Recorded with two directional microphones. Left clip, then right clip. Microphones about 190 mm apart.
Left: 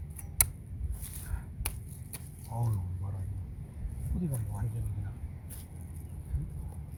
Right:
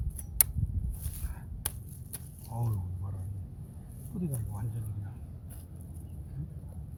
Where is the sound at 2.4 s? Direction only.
10° left (ahead or behind).